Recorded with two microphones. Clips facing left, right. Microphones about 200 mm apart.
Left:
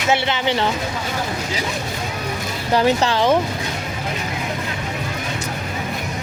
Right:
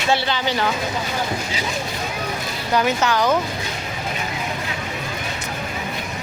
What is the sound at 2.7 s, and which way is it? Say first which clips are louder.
Speech: left 2 dB; 30° left (ahead or behind).